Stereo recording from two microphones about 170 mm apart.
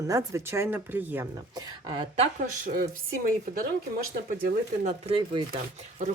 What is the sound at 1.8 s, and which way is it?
Speech, 25° right (ahead or behind).